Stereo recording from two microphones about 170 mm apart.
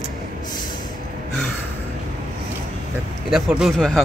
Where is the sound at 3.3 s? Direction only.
5° right (ahead or behind).